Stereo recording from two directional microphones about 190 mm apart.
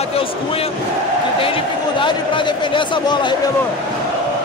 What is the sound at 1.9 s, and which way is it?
A man's voice, 25° left (ahead or behind).